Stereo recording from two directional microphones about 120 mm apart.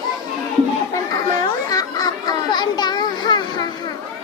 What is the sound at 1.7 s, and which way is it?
Children playing, 35° left (ahead or behind).